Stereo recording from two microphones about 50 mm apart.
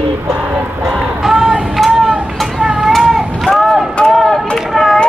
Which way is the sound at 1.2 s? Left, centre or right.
Centre.